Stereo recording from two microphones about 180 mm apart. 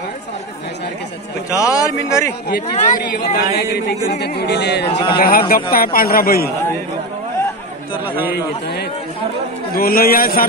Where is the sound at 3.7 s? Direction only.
65° left (ahead or behind).